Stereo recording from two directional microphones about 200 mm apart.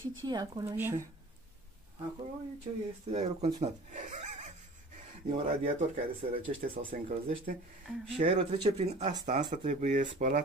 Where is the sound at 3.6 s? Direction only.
35° right (ahead or behind).